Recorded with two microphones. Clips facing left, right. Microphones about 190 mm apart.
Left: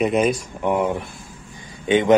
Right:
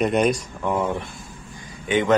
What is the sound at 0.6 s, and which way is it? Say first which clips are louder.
A man's voice: left 3 dB; 20° left (ahead or behind).